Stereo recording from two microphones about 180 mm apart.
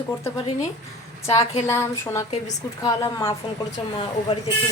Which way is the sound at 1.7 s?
15° left (ahead or behind).